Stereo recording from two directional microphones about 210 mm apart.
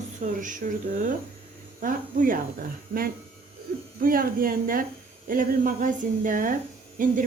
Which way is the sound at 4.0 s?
40° right (ahead or behind).